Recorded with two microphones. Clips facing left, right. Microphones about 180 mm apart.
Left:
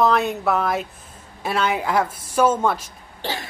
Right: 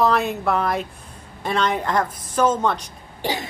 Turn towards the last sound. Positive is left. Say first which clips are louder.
# right 3 dB
turn(degrees=-15)  # may be behind; listen again after turning